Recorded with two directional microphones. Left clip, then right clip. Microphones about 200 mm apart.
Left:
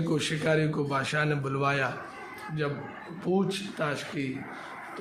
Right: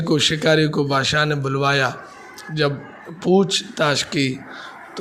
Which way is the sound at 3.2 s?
35° right (ahead or behind).